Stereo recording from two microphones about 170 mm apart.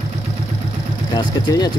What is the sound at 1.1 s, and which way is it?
Speech, 25° left (ahead or behind).